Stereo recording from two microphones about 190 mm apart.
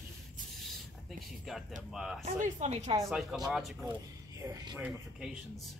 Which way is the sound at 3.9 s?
15° right (ahead or behind).